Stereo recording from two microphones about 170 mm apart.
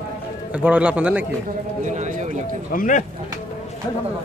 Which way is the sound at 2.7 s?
50° left (ahead or behind).